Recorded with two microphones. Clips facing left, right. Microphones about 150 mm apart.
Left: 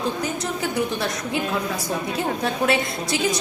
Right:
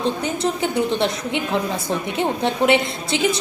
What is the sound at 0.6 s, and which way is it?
A woman's voice, 25° right (ahead or behind).